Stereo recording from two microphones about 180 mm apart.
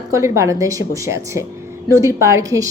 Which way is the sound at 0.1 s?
15° right (ahead or behind).